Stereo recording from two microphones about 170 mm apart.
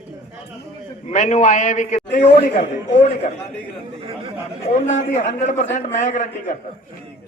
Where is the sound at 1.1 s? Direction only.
45° left (ahead or behind).